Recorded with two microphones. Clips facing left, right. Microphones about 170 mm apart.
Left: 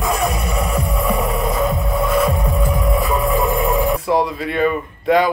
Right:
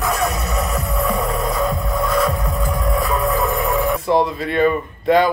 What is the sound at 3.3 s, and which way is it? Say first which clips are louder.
Music: left 2 dB; 30° left (ahead or behind).